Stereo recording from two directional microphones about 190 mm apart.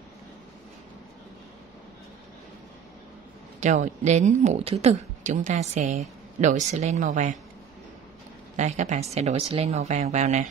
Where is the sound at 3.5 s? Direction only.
40° right (ahead or behind).